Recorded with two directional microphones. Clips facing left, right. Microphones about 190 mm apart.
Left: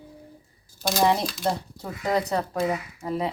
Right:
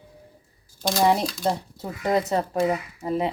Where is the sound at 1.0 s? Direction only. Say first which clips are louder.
Right 2 dB; 10° right (ahead or behind).